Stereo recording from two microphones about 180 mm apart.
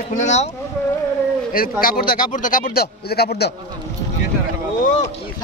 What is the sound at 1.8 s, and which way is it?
Speech, 50° left (ahead or behind).